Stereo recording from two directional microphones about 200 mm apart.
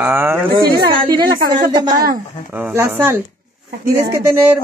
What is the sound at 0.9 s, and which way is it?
Speech, 25° right (ahead or behind).